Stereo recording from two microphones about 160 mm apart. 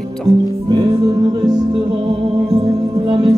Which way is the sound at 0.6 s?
25° right (ahead or behind).